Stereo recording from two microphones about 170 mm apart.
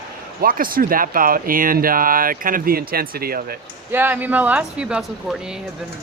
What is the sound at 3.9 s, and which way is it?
Speech, 10° right (ahead or behind).